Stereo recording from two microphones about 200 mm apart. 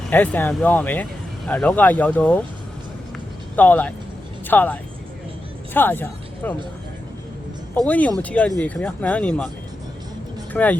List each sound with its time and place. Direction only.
0.1 s speech: 10° left (ahead or behind)
3.5 s speech: 10° left (ahead or behind)
7.9 s speech: 10° left (ahead or behind)
10.5 s speech: 10° left (ahead or behind)